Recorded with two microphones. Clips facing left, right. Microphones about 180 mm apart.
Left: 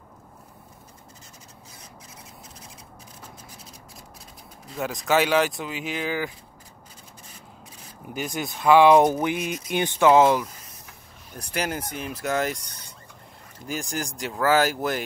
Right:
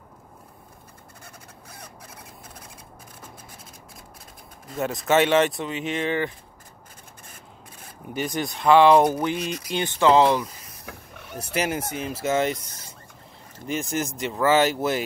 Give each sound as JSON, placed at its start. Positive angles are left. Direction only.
{"t": 1.2, "sound": "a sound", "side_deg": -60}
{"t": 4.7, "sound": "speech", "side_deg": 0}
{"t": 8.1, "sound": "speech", "side_deg": 0}
{"t": 10.9, "sound": "a sound", "side_deg": -70}
{"t": 11.5, "sound": "speech", "side_deg": -5}
{"t": 13.7, "sound": "speech", "side_deg": 0}